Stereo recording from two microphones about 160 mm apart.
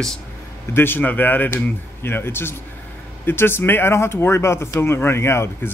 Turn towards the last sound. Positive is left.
turn(degrees=15)  # may be behind; listen again after turning